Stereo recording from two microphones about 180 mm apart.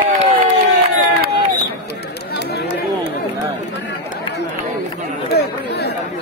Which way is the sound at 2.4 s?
65° left (ahead or behind).